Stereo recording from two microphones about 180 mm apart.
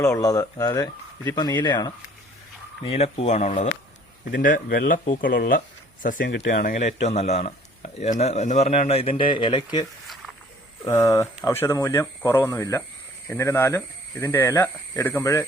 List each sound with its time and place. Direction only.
0.0 s speech: 20° left (ahead or behind)
2.8 s speech: 35° left (ahead or behind)
6.2 s speech: 75° left (ahead or behind)
6.5 s speech: 50° left (ahead or behind); by 9.8 s 25° left (ahead or behind)
10.8 s speech: 20° left (ahead or behind)